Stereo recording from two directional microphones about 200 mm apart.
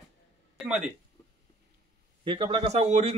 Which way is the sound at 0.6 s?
5° right (ahead or behind).